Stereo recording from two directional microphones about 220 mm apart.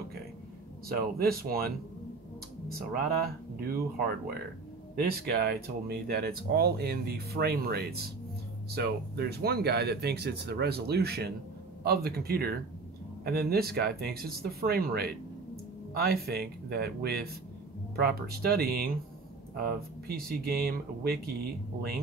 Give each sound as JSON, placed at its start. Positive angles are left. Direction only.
{"t": 0.8, "sound": "speech", "side_deg": -45}
{"t": 2.7, "sound": "speech", "side_deg": -45}
{"t": 4.9, "sound": "speech", "side_deg": -45}